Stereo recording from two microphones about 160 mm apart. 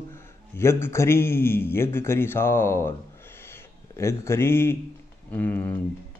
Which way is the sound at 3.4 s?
15° left (ahead or behind).